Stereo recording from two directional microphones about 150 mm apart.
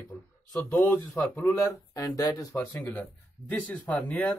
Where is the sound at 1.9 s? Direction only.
25° left (ahead or behind).